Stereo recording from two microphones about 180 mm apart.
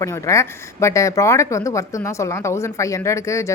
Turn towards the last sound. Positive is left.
turn(degrees=15)  # may be behind; listen again after turning